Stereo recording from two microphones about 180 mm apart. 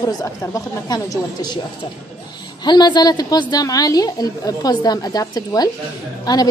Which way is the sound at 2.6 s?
25° left (ahead or behind).